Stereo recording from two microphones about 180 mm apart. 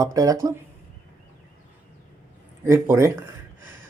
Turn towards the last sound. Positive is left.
turn(degrees=-15)  # may be behind; listen again after turning